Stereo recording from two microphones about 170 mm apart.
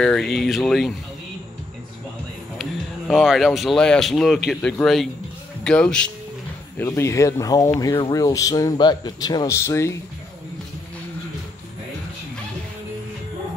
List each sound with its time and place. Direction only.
0.0 s speech: 5° left (ahead or behind)
2.6 s speech: centre (ahead or behind)
6.8 s speech: 15° left (ahead or behind)